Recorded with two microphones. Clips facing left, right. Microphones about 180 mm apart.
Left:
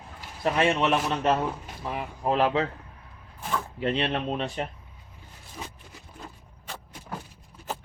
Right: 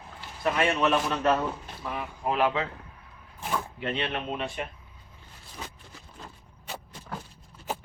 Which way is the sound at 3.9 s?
35° left (ahead or behind).